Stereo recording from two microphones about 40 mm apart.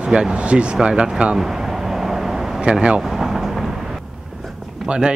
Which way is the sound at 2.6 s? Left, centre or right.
Right.